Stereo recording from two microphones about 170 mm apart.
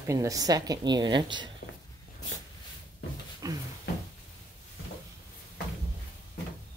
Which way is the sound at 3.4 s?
20° right (ahead or behind).